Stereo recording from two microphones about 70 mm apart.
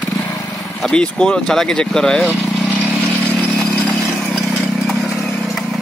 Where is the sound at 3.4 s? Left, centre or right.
Left.